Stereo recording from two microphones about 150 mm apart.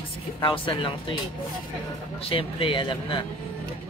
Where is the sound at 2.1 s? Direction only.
40° left (ahead or behind).